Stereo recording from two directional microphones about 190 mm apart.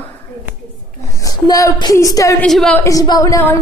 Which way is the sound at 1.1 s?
20° left (ahead or behind).